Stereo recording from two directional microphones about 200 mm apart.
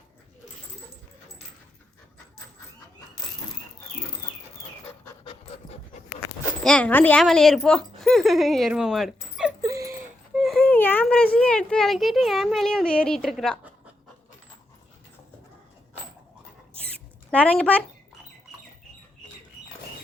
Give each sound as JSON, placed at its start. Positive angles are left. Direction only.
{"t": 6.7, "sound": "speech", "side_deg": 5}
{"t": 9.6, "sound": "a sound", "side_deg": -15}
{"t": 10.3, "sound": "a child's voice", "side_deg": 0}
{"t": 17.3, "sound": "speech", "side_deg": 5}